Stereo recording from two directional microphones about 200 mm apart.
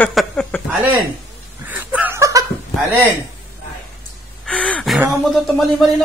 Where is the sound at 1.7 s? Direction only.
5° right (ahead or behind).